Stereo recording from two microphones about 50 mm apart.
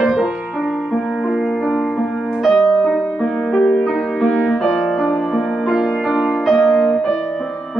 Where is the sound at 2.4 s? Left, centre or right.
Centre.